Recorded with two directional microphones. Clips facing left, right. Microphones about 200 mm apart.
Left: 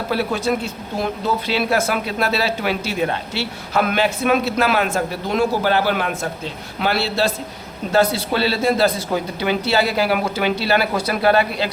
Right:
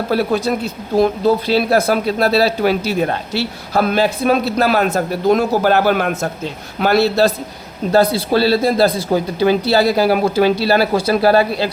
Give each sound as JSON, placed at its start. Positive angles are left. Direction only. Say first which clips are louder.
{"t": 0.1, "sound": "a man's voice", "louder": "right 3 dB", "side_deg": -35}